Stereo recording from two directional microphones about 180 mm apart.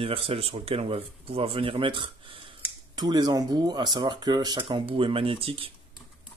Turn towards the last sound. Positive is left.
turn(degrees=-30)  # may be behind; listen again after turning